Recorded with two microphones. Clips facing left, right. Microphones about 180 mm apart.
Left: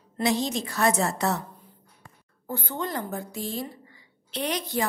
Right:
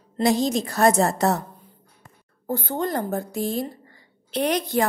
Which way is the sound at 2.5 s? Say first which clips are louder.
Right 6 dB; 45° right (ahead or behind).